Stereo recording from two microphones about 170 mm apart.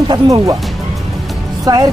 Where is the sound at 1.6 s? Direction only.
20° right (ahead or behind).